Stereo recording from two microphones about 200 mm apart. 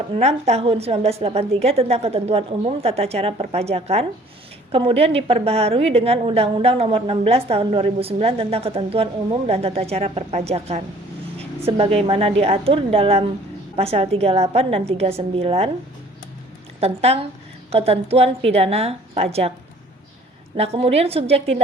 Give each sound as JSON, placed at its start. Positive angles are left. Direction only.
{"t": 0.1, "sound": "a woman's voice", "side_deg": -30}
{"t": 16.8, "sound": "a woman's voice", "side_deg": -30}
{"t": 20.6, "sound": "a woman's voice", "side_deg": -30}